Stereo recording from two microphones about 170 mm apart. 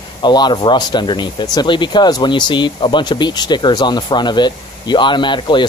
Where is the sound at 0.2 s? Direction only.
25° left (ahead or behind).